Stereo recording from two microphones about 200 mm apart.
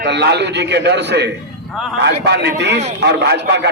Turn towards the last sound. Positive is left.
turn(degrees=-60)  # may be behind; listen again after turning